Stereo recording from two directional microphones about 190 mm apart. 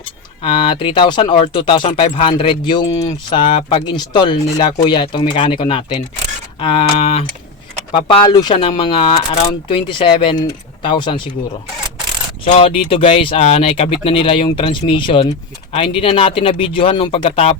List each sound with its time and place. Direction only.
0.4 s speech: 30° left (ahead or behind)
12.5 s speech: 30° left (ahead or behind)